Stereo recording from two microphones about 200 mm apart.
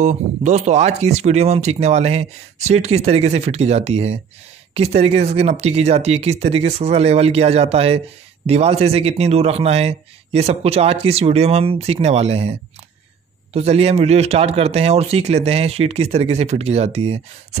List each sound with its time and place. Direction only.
0.0 s speech: 35° right (ahead or behind)